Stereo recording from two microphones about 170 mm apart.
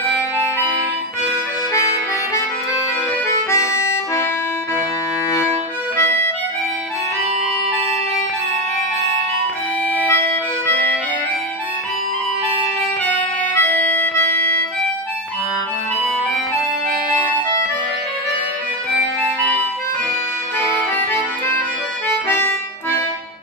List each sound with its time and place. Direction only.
3.4 s music: 15° left (ahead or behind)
13.6 s organ: 10° left (ahead or behind)
20.5 s accordion: 15° left (ahead or behind)